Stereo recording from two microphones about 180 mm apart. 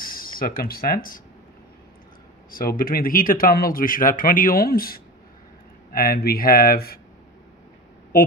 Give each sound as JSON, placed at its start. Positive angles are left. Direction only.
{"t": 0.0, "sound": "speech", "side_deg": 55}
{"t": 2.5, "sound": "speech", "side_deg": 55}